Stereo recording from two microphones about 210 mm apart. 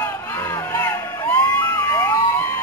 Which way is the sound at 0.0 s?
10° left (ahead or behind).